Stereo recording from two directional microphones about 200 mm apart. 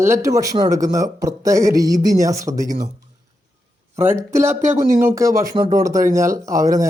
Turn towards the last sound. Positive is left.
turn(degrees=-15)  # may be behind; listen again after turning